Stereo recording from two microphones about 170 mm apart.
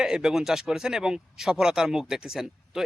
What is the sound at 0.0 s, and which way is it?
Speech, 5° right (ahead or behind).